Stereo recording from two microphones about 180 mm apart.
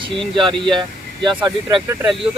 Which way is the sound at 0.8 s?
25° right (ahead or behind).